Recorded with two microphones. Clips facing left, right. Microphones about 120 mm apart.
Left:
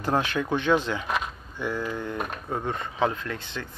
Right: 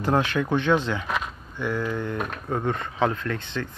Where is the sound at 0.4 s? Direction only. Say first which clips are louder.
Right 1 dB; 10° left (ahead or behind).